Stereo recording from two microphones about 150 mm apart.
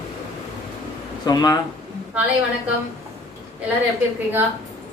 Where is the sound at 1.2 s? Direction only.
25° left (ahead or behind).